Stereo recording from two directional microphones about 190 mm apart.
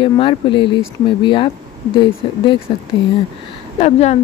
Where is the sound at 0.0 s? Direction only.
25° left (ahead or behind).